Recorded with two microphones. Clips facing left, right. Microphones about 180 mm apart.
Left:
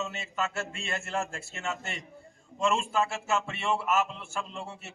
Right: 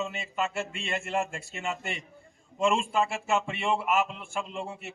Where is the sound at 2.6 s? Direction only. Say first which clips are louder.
Right 2 dB; 10° right (ahead or behind).